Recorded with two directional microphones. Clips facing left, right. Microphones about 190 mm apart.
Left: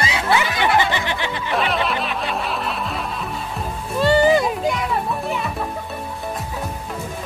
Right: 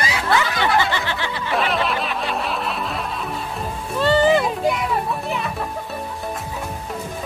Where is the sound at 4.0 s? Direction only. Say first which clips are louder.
Left 1 dB; 15° left (ahead or behind).